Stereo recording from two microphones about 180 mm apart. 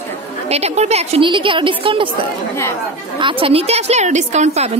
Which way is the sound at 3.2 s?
30° right (ahead or behind).